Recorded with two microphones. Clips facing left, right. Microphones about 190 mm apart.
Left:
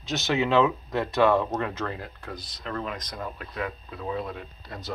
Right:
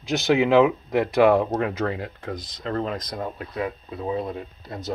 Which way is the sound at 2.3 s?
90° right.